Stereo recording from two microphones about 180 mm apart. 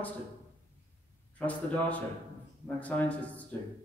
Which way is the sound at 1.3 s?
10° left (ahead or behind).